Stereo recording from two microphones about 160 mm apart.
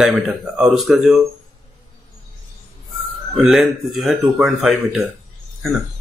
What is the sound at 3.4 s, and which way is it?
A man's voice, centre (ahead or behind).